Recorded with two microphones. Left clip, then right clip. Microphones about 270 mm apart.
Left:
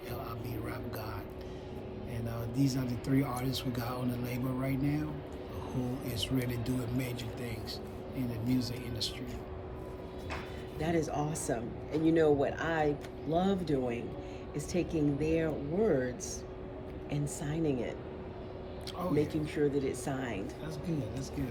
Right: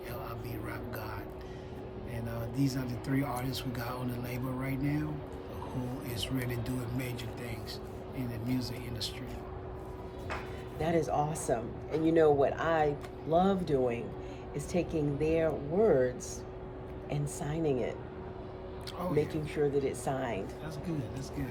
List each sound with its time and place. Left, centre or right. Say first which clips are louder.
2.2 s speech: left 1 dB; centre
6.1 s speech: left 1 dB; centre
8.4 s speech: left 2 dB; centre
10.8 s speech: right 3 dB; centre
19.1 s speech: even; centre